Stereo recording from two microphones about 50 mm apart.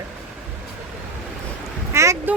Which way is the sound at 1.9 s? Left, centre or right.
Right.